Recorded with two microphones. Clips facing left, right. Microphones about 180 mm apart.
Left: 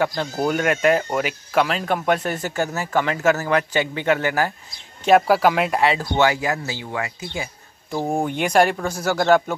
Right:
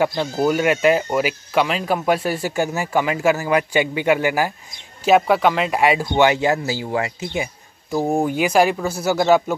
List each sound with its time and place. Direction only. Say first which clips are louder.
0.0 s speech: right 3 dB; 10° right (ahead or behind)
5.0 s speech: even; centre (ahead or behind)
5.8 s speech: right 2 dB; 15° right (ahead or behind)
7.9 s speech: right 3 dB; 5° right (ahead or behind)